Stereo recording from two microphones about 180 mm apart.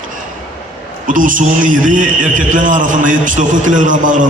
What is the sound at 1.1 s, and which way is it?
A man's voice, 45° right (ahead or behind).